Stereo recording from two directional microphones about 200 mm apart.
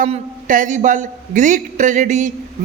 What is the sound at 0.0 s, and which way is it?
A woman's voice, 40° right (ahead or behind).